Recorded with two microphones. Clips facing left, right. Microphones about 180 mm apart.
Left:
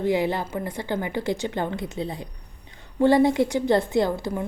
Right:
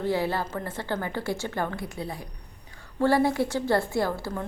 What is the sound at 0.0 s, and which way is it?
A woman's voice, 15° left (ahead or behind).